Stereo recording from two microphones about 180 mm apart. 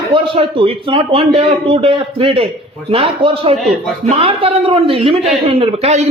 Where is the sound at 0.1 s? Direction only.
30° right (ahead or behind).